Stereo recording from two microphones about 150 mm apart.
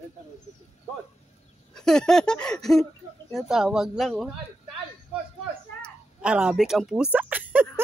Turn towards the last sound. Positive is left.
turn(degrees=-10)  # may be behind; listen again after turning